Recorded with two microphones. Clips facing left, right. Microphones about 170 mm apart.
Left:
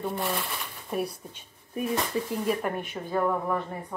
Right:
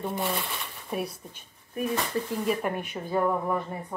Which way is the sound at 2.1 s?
Centre (ahead or behind).